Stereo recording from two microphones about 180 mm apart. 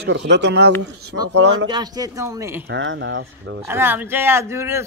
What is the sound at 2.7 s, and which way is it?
Speech, 90° right.